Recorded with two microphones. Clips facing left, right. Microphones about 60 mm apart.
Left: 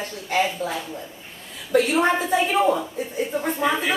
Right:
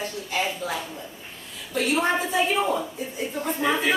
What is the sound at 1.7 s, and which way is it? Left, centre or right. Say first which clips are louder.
A woman's voice: left 4 dB; left.